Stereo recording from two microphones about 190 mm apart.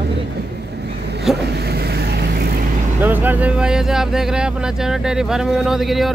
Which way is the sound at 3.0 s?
10° right (ahead or behind).